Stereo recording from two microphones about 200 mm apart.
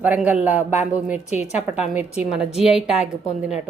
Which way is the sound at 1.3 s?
35° left (ahead or behind).